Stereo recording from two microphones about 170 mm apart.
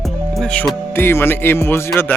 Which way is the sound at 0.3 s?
10° left (ahead or behind).